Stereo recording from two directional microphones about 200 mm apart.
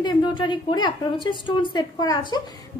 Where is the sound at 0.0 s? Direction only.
25° left (ahead or behind).